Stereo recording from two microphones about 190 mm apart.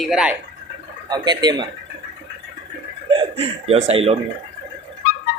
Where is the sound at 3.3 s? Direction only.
30° right (ahead or behind).